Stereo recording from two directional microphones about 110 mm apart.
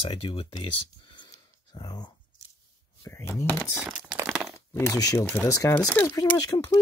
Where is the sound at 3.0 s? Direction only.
20° left (ahead or behind).